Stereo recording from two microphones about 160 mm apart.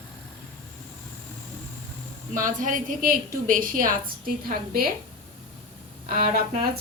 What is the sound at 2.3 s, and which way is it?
A woman's voice, 55° right (ahead or behind).